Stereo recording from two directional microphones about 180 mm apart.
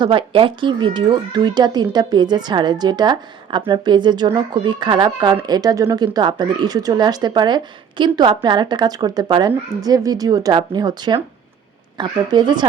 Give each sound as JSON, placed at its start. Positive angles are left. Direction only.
{"t": 0.0, "sound": "speech", "side_deg": -30}